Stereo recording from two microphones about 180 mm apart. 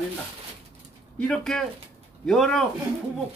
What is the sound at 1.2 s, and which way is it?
Speech, 5° left (ahead or behind).